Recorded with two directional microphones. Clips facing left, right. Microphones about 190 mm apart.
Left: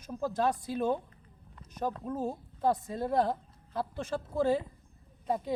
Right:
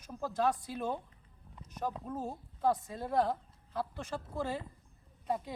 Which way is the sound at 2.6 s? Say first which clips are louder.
Left 3 dB; 30° left (ahead or behind).